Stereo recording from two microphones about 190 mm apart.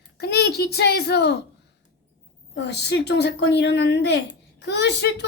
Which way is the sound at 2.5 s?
65° left (ahead or behind).